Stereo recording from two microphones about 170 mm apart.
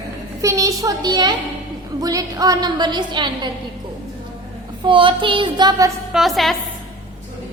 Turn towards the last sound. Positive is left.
turn(degrees=0)  # may be behind; listen again after turning